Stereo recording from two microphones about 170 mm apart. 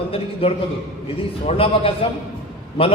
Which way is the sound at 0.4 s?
35° left (ahead or behind).